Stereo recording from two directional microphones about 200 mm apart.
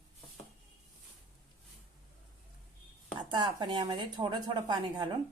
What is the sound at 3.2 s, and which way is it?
Speech, 20° right (ahead or behind).